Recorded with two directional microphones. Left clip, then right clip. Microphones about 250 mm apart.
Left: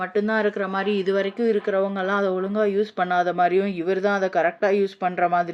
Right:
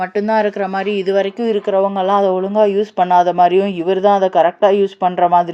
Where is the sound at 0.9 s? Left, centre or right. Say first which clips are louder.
Right 7 dB; centre.